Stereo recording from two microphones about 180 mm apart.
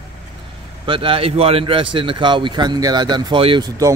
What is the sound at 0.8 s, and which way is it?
A man's voice, 30° right (ahead or behind).